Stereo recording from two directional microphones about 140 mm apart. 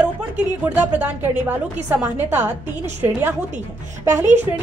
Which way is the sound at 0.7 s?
10° right (ahead or behind).